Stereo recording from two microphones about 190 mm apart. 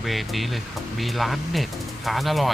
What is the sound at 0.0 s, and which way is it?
Speech, centre (ahead or behind).